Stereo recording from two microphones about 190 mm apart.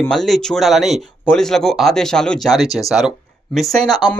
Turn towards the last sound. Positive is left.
turn(degrees=0)  # may be behind; listen again after turning